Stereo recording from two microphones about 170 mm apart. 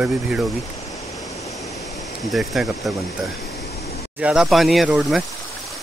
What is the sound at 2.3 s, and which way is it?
Speech, centre (ahead or behind).